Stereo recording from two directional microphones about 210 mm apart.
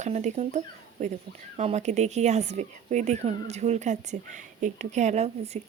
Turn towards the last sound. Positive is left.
turn(degrees=-30)  # may be behind; listen again after turning